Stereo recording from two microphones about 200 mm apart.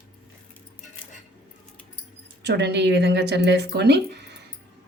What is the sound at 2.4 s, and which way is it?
Speech, 60° right (ahead or behind).